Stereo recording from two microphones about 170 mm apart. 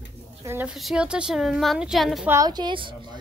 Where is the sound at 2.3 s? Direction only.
20° right (ahead or behind).